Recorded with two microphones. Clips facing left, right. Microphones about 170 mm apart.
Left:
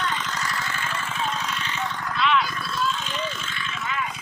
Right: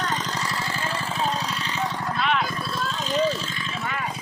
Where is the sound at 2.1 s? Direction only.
50° right (ahead or behind).